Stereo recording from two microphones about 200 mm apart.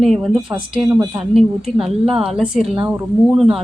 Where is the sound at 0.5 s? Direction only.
15° right (ahead or behind).